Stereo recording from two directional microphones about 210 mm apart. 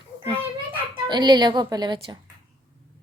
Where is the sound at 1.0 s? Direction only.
20° right (ahead or behind).